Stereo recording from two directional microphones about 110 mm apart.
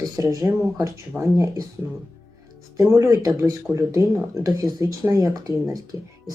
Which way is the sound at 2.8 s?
25° right (ahead or behind).